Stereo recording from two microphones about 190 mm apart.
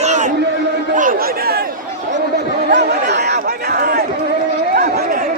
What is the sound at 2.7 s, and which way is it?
Chatter, 65° right (ahead or behind).